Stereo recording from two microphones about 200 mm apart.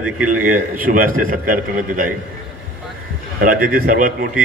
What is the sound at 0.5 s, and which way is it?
A man's voice, 45° right (ahead or behind).